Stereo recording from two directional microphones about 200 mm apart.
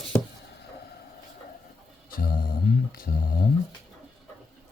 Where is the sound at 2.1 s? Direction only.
45° left (ahead or behind).